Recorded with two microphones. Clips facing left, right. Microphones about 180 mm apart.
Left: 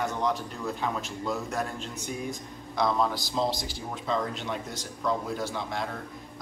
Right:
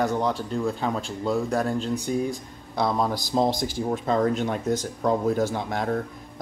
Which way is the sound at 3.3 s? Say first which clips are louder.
Right 8 dB; 50° right (ahead or behind).